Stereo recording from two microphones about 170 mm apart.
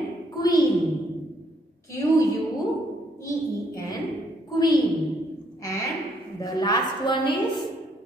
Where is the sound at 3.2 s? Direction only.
25° left (ahead or behind).